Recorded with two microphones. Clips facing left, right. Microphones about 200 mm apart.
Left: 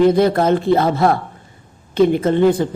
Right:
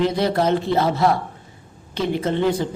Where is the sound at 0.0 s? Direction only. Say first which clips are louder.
Left 6 dB; 50° left (ahead or behind).